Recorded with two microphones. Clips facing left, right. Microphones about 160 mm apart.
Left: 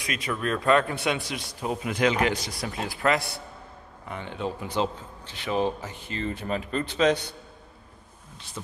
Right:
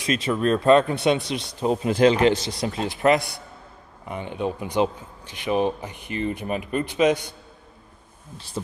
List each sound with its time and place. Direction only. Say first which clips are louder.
0.0 s a man's voice: right 7 dB; 25° right (ahead or behind)
8.6 s speech: right 8 dB; 35° right (ahead or behind)